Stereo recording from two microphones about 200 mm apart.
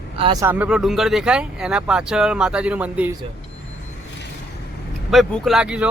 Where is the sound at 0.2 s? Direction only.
25° right (ahead or behind).